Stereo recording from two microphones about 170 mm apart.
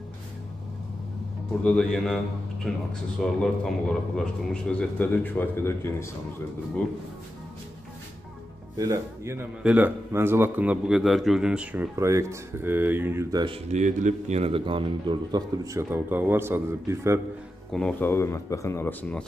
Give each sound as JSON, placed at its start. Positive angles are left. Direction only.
{"t": 1.6, "sound": "a man's voice", "side_deg": 5}
{"t": 8.7, "sound": "a man's voice", "side_deg": -20}
{"t": 13.7, "sound": "a man's voice", "side_deg": -45}
{"t": 17.7, "sound": "a man's voice", "side_deg": 10}